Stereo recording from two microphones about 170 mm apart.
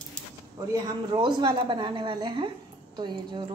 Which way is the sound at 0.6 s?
25° right (ahead or behind).